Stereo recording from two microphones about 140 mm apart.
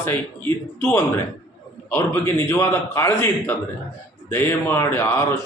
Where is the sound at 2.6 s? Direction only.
20° left (ahead or behind).